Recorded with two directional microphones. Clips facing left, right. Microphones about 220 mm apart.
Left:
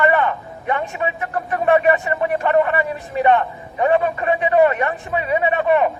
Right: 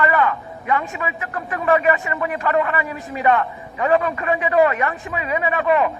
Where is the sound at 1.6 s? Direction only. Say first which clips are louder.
Left 2 dB; 30° left (ahead or behind).